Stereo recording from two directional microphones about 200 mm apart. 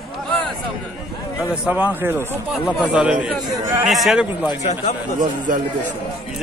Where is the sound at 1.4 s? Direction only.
5° right (ahead or behind).